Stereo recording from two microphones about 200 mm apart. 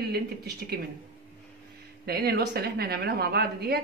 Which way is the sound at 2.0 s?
50° right (ahead or behind).